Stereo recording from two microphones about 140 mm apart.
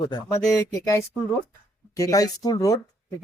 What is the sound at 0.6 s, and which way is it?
Speech, 20° left (ahead or behind).